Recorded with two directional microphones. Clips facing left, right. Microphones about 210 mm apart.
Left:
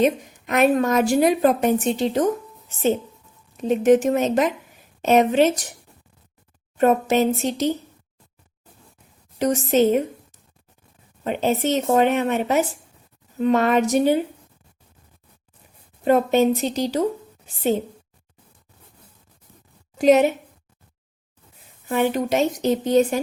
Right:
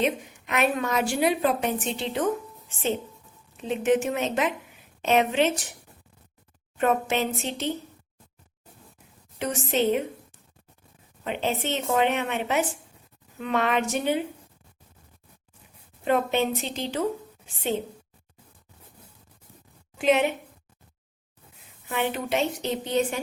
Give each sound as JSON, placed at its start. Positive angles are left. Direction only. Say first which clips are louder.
{"t": 0.0, "sound": "a woman's voice", "louder": "left 6 dB", "side_deg": 40}
{"t": 6.7, "sound": "a woman's voice", "louder": "left 6 dB", "side_deg": 40}
{"t": 9.4, "sound": "a woman's voice", "louder": "left 7 dB", "side_deg": 40}
{"t": 11.2, "sound": "a woman's voice", "louder": "left 6 dB", "side_deg": 40}
{"t": 16.0, "sound": "a woman's voice", "louder": "left 7 dB", "side_deg": 40}
{"t": 20.0, "sound": "a woman's voice", "louder": "left 7 dB", "side_deg": 40}
{"t": 21.8, "sound": "a woman's voice", "louder": "left 7 dB", "side_deg": 40}